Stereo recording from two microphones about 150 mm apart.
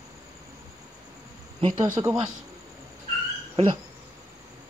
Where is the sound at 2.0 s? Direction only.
20° right (ahead or behind).